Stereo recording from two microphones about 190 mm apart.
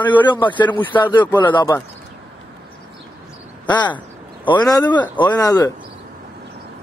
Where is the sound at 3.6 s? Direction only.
25° left (ahead or behind).